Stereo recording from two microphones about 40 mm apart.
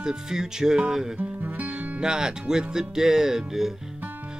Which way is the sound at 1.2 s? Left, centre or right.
Right.